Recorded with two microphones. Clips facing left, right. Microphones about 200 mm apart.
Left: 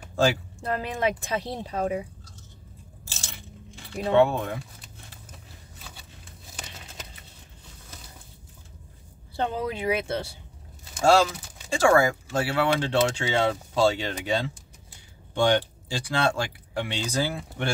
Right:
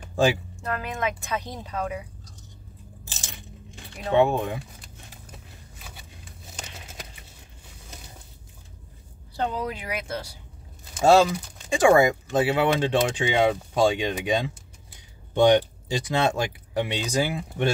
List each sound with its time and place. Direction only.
0.1 s a sound: 15° right (ahead or behind)
0.6 s speech: 30° left (ahead or behind)
3.7 s speech: 15° right (ahead or behind)
9.6 s speech: 25° left (ahead or behind)
11.0 s speech: 20° right (ahead or behind)